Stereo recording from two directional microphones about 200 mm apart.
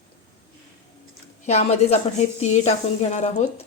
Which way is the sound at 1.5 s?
35° left (ahead or behind).